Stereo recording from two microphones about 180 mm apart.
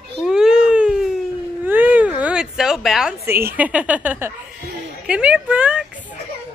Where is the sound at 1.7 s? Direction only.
10° right (ahead or behind).